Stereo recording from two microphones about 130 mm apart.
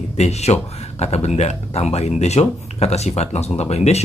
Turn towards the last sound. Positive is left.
turn(degrees=55)  # may be behind; listen again after turning